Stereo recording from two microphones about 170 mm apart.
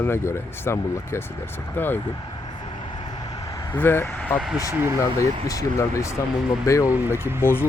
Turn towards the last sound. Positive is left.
turn(degrees=15)  # may be behind; listen again after turning